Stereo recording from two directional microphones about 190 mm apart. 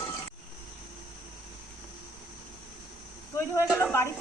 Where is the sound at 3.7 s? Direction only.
10° left (ahead or behind).